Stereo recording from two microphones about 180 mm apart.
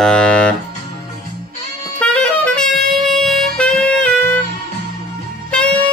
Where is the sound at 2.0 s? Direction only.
5° left (ahead or behind).